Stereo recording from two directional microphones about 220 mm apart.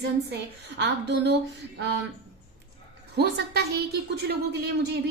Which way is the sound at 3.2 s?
45° right (ahead or behind).